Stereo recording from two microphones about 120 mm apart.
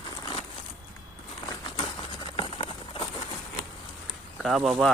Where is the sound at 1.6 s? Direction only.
40° left (ahead or behind).